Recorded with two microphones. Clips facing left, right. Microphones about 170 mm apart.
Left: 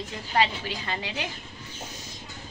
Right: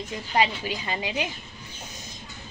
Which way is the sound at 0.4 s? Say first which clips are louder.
Right 1 dB; 15° right (ahead or behind).